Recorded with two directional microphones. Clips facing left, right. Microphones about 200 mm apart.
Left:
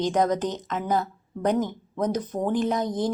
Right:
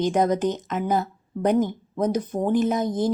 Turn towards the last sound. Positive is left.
turn(degrees=-5)  # may be behind; listen again after turning